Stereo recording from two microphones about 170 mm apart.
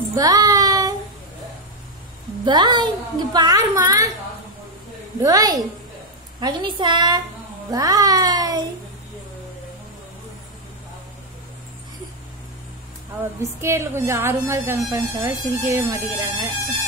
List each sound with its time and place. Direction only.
0.1 s child singing: 20° right (ahead or behind)
2.4 s a woman's voice: 25° right (ahead or behind)
5.2 s a woman's voice: 20° right (ahead or behind)
13.2 s a woman's voice: 15° right (ahead or behind)